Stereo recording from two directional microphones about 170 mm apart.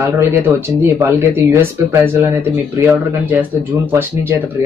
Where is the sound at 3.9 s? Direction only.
15° right (ahead or behind).